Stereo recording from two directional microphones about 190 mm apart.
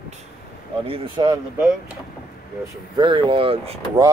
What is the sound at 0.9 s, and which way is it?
Speech, 25° right (ahead or behind).